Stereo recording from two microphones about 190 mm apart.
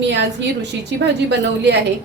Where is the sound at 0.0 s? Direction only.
65° right (ahead or behind).